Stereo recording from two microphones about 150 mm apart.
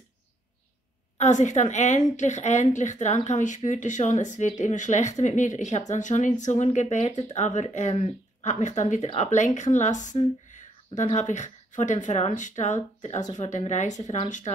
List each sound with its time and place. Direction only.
1.1 s speech: 50° left (ahead or behind)